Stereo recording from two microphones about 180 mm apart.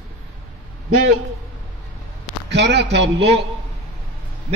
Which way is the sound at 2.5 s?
70° right (ahead or behind).